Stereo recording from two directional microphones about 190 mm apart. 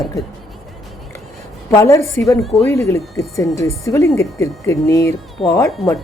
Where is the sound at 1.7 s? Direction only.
15° left (ahead or behind).